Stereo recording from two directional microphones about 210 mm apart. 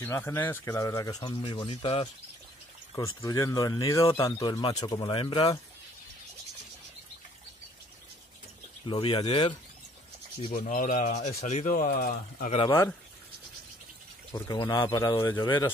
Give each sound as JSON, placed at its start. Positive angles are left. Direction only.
{"t": 0.0, "sound": "speech", "side_deg": 10}
{"t": 3.2, "sound": "speech", "side_deg": 15}
{"t": 8.8, "sound": "speech", "side_deg": 25}
{"t": 10.5, "sound": "speech", "side_deg": 40}
{"t": 12.4, "sound": "speech", "side_deg": 25}
{"t": 14.3, "sound": "speech", "side_deg": 20}